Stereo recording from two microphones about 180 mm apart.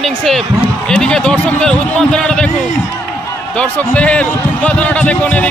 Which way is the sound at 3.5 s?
10° left (ahead or behind).